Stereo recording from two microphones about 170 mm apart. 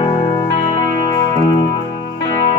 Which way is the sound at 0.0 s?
30° left (ahead or behind).